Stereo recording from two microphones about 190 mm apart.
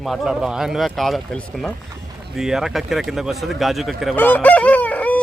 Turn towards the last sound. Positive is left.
turn(degrees=10)  # may be behind; listen again after turning